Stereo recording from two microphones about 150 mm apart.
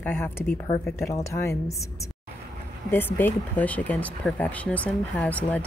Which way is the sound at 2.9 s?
15° left (ahead or behind).